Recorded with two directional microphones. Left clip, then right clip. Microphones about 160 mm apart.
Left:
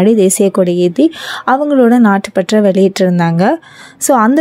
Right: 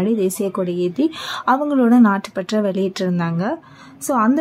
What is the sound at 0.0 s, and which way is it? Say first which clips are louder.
A woman's voice: left 10 dB; 40° left (ahead or behind).